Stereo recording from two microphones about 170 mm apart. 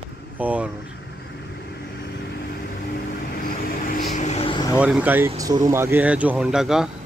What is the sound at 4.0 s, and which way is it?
Vehicle, 45° left (ahead or behind).